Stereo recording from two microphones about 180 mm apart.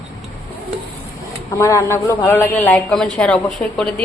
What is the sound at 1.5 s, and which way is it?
A man's voice, 15° left (ahead or behind).